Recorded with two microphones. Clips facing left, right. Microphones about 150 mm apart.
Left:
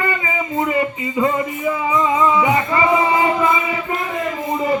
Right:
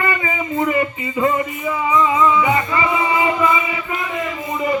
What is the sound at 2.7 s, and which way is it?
Music, 35° left (ahead or behind).